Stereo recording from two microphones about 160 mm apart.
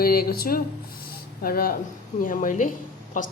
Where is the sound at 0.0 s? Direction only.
70° left (ahead or behind).